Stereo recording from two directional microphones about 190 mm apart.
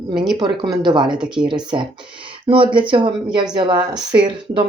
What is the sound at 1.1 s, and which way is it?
Speech, 5° right (ahead or behind).